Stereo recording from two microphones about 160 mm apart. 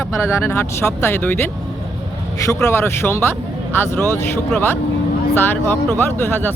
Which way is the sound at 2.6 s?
15° left (ahead or behind).